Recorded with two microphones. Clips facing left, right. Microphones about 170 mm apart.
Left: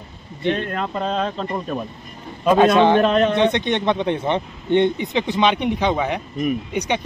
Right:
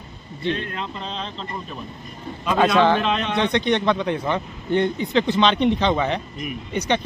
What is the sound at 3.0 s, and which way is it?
Speech, 45° left (ahead or behind).